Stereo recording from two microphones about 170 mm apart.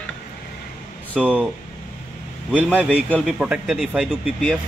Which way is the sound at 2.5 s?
10° right (ahead or behind).